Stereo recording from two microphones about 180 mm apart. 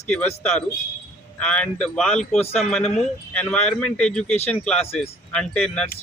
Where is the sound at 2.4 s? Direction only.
35° left (ahead or behind).